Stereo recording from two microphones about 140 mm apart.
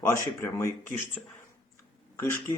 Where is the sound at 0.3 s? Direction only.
20° left (ahead or behind).